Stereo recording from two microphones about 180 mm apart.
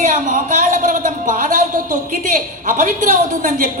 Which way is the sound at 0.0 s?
45° right (ahead or behind).